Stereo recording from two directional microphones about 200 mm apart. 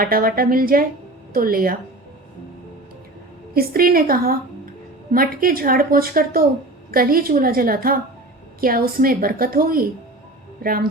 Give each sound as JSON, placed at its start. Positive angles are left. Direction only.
{"t": 0.0, "sound": "speech", "side_deg": -45}
{"t": 3.5, "sound": "speech", "side_deg": -50}